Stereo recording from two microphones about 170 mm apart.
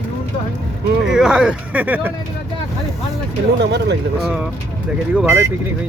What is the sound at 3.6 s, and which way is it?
Speech, 85° right.